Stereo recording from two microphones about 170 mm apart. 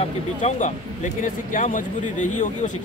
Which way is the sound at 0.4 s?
45° left (ahead or behind).